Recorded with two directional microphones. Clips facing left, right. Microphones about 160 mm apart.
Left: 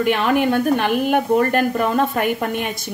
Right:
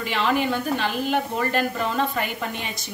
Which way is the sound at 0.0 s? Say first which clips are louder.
Left 6 dB; 55° left (ahead or behind).